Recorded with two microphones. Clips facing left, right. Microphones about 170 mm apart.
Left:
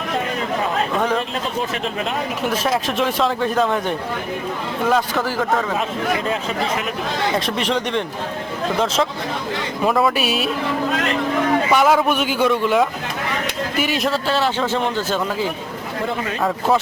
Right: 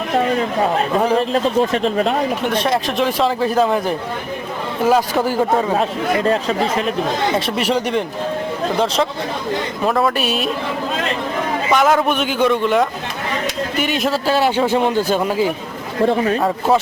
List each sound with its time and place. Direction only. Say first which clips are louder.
1.0 s speech: right 6 dB; 35° right (ahead or behind)
2.4 s a man's voice: right 2 dB; 5° left (ahead or behind); by 5.5 s 15° right (ahead or behind)
5.5 s speech: right 4 dB; 25° right (ahead or behind)
7.3 s a man's voice: right 2 dB; 5° right (ahead or behind)
9.8 s a man's voice: even; 5° left (ahead or behind)
11.7 s a man's voice: right 3 dB; 5° left (ahead or behind); by 15.3 s 10° right (ahead or behind)